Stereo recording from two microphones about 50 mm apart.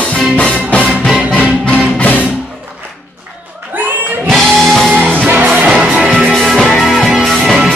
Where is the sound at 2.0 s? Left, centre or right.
Left.